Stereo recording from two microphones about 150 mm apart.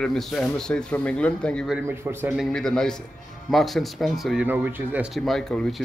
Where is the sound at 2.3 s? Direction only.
5° left (ahead or behind).